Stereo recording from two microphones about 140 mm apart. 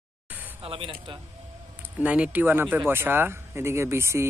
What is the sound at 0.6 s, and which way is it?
Speech, 40° right (ahead or behind).